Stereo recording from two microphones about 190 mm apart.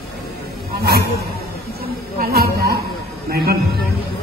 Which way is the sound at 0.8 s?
55° right (ahead or behind).